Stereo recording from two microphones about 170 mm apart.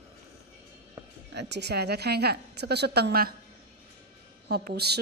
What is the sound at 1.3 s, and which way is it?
Speech, 85° right.